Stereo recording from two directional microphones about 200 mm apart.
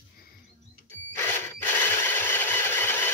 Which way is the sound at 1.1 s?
10° left (ahead or behind).